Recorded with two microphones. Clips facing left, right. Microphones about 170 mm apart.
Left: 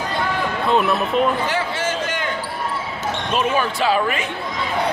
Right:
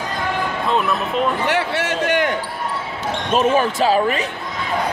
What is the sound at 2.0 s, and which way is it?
Basketball bounce, 70° right (ahead or behind).